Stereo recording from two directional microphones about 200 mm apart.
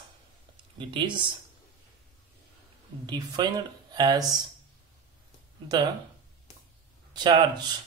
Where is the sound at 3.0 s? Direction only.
20° right (ahead or behind).